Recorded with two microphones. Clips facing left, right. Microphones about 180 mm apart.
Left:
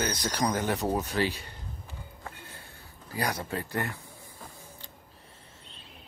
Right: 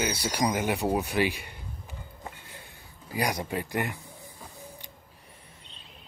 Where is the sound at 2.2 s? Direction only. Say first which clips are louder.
Right 1 dB; 15° right (ahead or behind).